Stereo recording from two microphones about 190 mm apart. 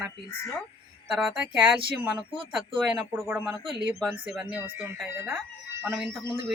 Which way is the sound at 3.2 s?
10° right (ahead or behind).